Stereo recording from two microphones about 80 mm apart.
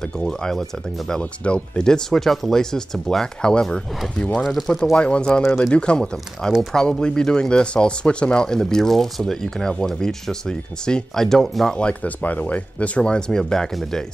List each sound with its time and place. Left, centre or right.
0.2 s speech: centre
5.0 s speech: centre
5.4 s speech: left
5.7 s speech: centre